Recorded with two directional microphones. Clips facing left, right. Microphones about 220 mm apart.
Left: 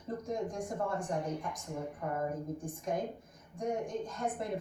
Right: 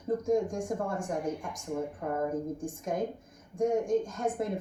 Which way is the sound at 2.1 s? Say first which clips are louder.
Right 4 dB; 50° right (ahead or behind).